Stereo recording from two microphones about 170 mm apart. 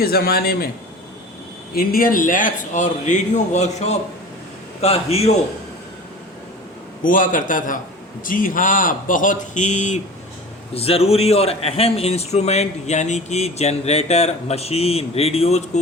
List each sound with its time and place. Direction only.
0.0 s a man's voice: 65° left (ahead or behind)
1.7 s a man's voice: 60° left (ahead or behind); by 5.3 s 35° left (ahead or behind)
7.0 s a man's voice: 55° left (ahead or behind)